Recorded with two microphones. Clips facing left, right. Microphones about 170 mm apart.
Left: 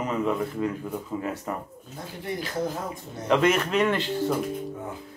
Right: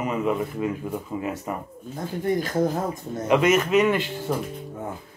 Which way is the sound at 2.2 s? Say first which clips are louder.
Right 6 dB; 45° right (ahead or behind).